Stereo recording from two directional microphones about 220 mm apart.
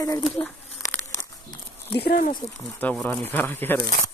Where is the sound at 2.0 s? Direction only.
45° left (ahead or behind).